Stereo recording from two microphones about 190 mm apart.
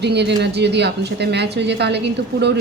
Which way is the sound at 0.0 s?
60° right (ahead or behind).